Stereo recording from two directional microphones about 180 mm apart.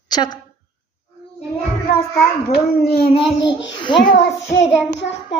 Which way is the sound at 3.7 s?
25° left (ahead or behind).